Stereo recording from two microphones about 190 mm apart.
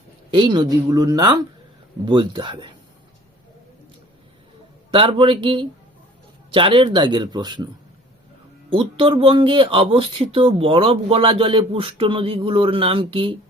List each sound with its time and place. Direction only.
0.3 s speech: 25° right (ahead or behind)
4.9 s speech: 25° right (ahead or behind)
8.7 s speech: 25° right (ahead or behind)